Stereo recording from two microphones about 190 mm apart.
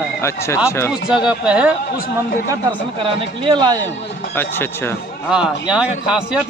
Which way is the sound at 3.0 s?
25° right (ahead or behind).